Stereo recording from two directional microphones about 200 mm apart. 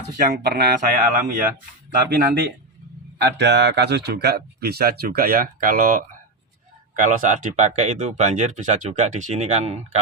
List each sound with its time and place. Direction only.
0.3 s speech: 50° right (ahead or behind)
3.2 s speech: 60° right (ahead or behind); by 10.0 s 35° right (ahead or behind)